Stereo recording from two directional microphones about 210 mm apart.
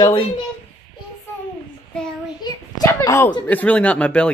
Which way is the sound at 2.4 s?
15° left (ahead or behind).